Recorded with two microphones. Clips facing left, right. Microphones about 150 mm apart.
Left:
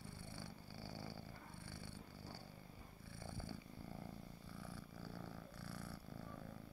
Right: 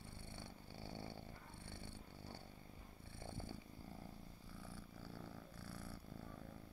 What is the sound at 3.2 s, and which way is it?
Purr, 20° right (ahead or behind).